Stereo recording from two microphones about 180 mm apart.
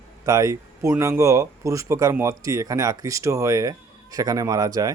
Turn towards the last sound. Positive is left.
turn(degrees=-20)  # may be behind; listen again after turning